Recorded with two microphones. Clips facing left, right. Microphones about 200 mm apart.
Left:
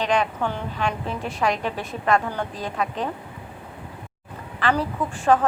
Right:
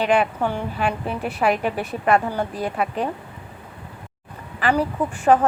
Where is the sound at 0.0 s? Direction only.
10° right (ahead or behind).